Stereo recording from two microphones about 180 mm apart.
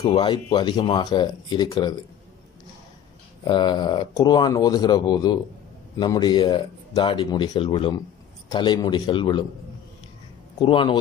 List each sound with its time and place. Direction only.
0.0 s speech: 25° left (ahead or behind)
3.4 s speech: 25° left (ahead or behind)
10.6 s speech: 25° left (ahead or behind)